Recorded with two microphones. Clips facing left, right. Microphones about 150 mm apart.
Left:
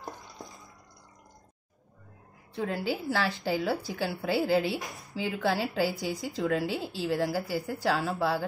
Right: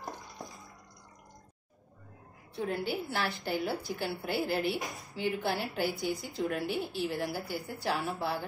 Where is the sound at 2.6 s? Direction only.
90° left.